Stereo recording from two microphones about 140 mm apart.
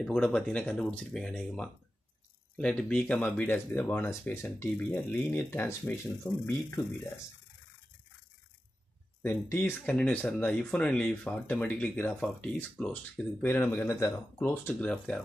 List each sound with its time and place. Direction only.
0.0 s speech: 5° left (ahead or behind)
9.2 s speech: 15° left (ahead or behind)